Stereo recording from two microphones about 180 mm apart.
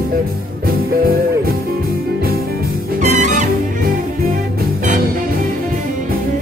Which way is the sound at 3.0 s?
40° right (ahead or behind).